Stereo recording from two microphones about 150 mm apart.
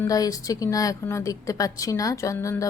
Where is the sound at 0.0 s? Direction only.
25° left (ahead or behind).